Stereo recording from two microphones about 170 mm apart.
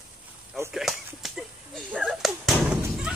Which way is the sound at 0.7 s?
Centre (ahead or behind).